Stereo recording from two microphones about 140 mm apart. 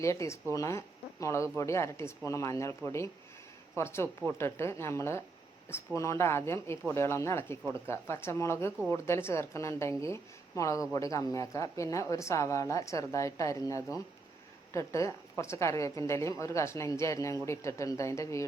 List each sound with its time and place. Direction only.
0.0 s speech: 20° left (ahead or behind)